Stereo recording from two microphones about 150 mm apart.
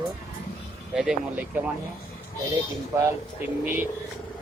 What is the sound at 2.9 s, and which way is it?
Speech, 20° right (ahead or behind).